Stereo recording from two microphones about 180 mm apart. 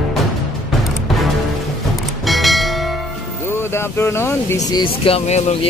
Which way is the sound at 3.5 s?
15° left (ahead or behind).